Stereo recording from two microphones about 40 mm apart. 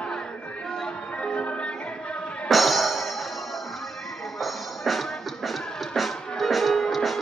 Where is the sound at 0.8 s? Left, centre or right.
Left.